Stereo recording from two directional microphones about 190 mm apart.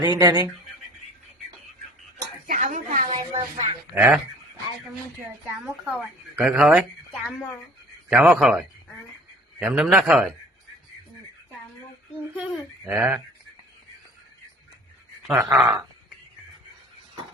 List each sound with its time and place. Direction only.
0.0 s speech: 20° right (ahead or behind)
2.5 s dishes: 40° right (ahead or behind)
3.1 s a sound: 25° right (ahead or behind)
3.9 s speech: 10° right (ahead or behind)
5.6 s a woman's voice: 5° right (ahead or behind)
12.4 s speech: 5° right (ahead or behind)
15.3 s speech: 15° right (ahead or behind)
15.5 s a woman's voice: 5° right (ahead or behind)